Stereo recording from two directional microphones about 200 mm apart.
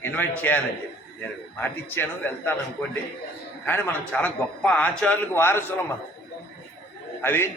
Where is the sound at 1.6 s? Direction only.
10° left (ahead or behind).